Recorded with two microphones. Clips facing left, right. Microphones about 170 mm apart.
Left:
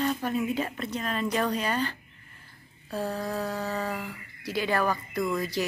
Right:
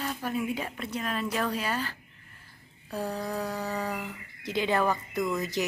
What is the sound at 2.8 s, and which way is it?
Speech, 15° right (ahead or behind).